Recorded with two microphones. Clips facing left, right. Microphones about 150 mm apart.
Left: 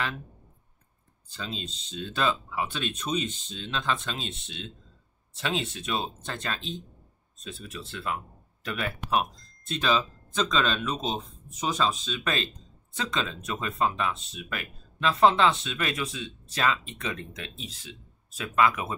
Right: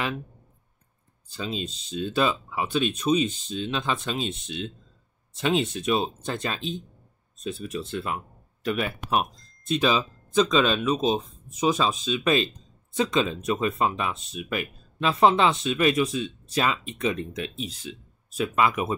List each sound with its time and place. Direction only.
1.3 s speech: 10° right (ahead or behind)